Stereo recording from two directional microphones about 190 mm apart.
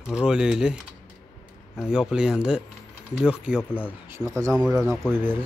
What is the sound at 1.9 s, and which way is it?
Speech, 5° right (ahead or behind).